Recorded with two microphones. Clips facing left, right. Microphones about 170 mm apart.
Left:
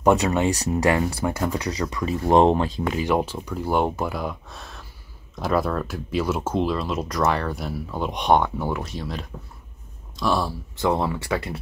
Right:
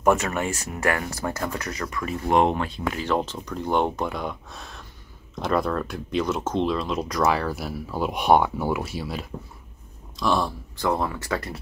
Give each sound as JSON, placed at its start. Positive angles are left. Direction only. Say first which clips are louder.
{"t": 0.0, "sound": "speech", "louder": "left 3 dB", "side_deg": 15}
{"t": 0.5, "sound": "speech", "louder": "left 7 dB", "side_deg": 35}
{"t": 0.8, "sound": "speech", "louder": "left 3 dB", "side_deg": 20}
{"t": 2.0, "sound": "speech", "louder": "left 4 dB", "side_deg": 30}
{"t": 2.9, "sound": "speech", "louder": "left 1 dB", "side_deg": 15}
{"t": 10.8, "sound": "speech", "louder": "left 2 dB", "side_deg": 20}